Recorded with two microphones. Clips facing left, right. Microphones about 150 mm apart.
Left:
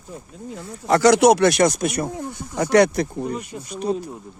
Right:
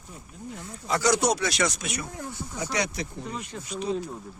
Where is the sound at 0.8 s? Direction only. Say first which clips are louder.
Left 10 dB; 70° left (ahead or behind); by 2.1 s 50° left (ahead or behind).